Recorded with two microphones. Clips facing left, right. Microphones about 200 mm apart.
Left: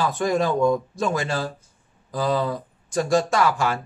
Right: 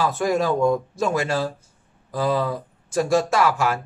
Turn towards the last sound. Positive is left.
turn(degrees=-5)  # may be behind; listen again after turning